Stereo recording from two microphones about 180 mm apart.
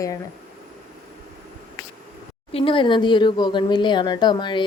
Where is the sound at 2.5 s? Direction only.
30° left (ahead or behind).